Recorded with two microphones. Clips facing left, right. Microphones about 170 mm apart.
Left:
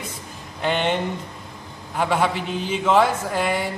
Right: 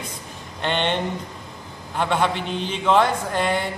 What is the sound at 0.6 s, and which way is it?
Speech, 5° left (ahead or behind).